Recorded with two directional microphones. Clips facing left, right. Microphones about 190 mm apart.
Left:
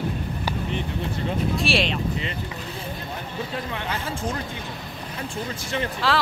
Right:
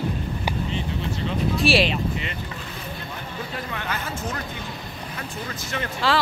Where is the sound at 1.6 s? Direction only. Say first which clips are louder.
Right 6 dB; centre (ahead or behind).